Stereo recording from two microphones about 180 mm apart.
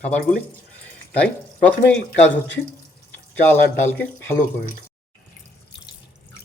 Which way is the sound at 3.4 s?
10° left (ahead or behind).